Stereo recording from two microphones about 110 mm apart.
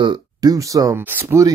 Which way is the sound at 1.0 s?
20° right (ahead or behind).